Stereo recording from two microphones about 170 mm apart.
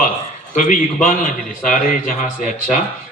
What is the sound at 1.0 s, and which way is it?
A man's voice, 50° left (ahead or behind).